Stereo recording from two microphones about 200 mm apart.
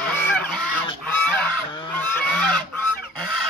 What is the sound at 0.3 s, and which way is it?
Goose, 5° left (ahead or behind).